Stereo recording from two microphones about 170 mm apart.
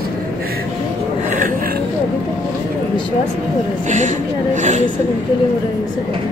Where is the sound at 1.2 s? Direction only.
50° right (ahead or behind).